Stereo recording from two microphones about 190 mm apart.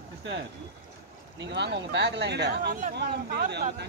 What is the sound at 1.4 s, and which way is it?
Speech, 65° right (ahead or behind).